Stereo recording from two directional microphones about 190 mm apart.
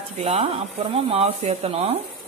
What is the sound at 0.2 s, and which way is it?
Speech, 35° right (ahead or behind).